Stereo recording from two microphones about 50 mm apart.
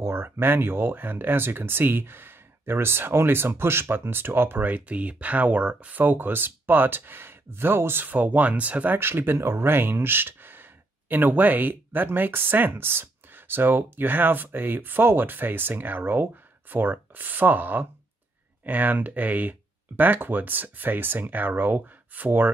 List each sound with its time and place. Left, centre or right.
0.0 s speech: right
9.0 s speech: right